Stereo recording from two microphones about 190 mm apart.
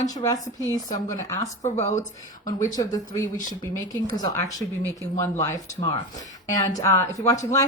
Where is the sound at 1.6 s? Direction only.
35° left (ahead or behind).